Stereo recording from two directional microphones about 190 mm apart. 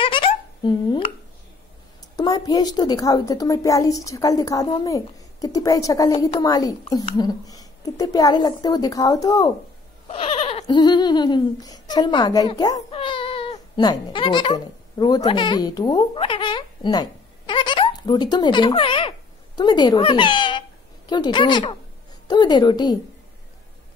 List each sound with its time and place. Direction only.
0.0 s a sound: 30° left (ahead or behind)
2.1 s a woman's voice: 20° left (ahead or behind)
10.0 s a woman's voice: 30° left (ahead or behind)